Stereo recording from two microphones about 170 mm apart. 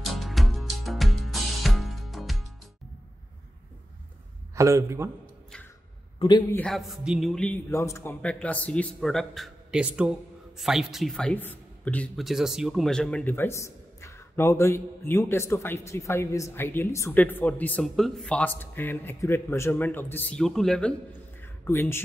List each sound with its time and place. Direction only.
0.0 s music: centre (ahead or behind)
4.6 s speech: 20° right (ahead or behind)
6.1 s a man's voice: 25° left (ahead or behind)
6.5 s speech: 5° left (ahead or behind)
21.4 s a sound: 15° left (ahead or behind)